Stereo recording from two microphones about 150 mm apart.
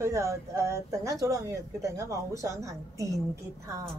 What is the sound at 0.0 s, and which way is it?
Speech, 20° right (ahead or behind).